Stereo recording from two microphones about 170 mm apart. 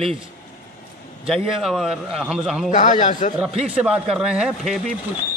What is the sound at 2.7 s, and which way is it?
Speech, 45° left (ahead or behind).